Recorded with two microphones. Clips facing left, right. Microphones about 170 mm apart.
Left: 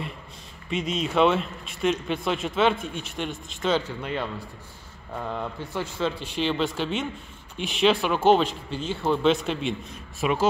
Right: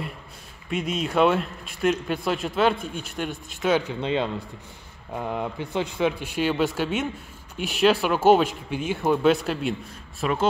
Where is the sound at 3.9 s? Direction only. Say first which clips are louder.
Right 5 dB; 20° right (ahead or behind).